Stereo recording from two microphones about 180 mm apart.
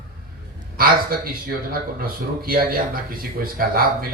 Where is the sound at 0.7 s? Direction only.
55° right (ahead or behind).